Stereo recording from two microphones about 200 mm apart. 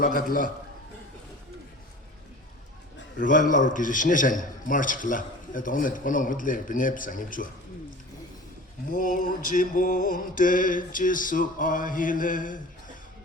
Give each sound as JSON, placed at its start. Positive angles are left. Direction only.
{"t": 0.0, "sound": "mantra", "side_deg": 45}
{"t": 3.2, "sound": "a man's voice", "side_deg": 40}
{"t": 8.9, "sound": "mantra", "side_deg": 40}